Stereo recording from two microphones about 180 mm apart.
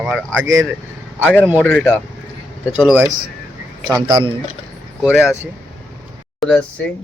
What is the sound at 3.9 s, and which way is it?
Speech, 25° right (ahead or behind).